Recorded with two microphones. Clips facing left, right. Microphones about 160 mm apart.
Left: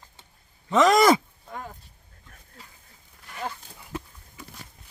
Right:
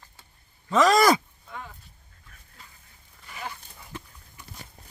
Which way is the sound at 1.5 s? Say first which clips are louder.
Left 3 dB; 35° left (ahead or behind).